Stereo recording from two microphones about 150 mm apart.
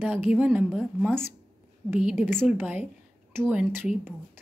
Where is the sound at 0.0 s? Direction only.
15° right (ahead or behind).